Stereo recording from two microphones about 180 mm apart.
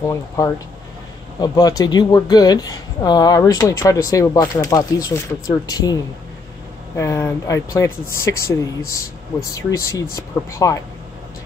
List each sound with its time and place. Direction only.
0.0 s speech: 15° left (ahead or behind)
9.5 s speech: 20° left (ahead or behind)